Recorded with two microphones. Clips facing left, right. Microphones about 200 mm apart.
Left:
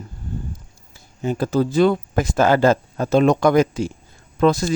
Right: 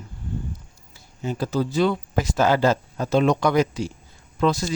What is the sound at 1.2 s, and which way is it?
Speech, 50° left (ahead or behind).